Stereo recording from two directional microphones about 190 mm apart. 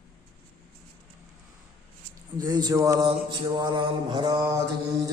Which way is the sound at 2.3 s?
20° right (ahead or behind).